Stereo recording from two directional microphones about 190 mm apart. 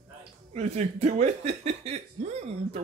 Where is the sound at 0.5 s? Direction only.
35° right (ahead or behind).